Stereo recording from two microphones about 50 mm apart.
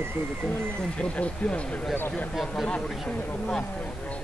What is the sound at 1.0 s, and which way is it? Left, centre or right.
Speech, left.